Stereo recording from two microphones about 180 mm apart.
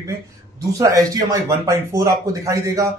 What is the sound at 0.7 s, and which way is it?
Speech, 20° right (ahead or behind).